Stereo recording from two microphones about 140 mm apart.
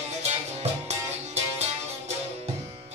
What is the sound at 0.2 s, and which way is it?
Music, 50° right (ahead or behind).